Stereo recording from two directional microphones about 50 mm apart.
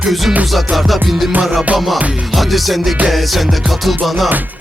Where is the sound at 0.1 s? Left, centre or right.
Centre.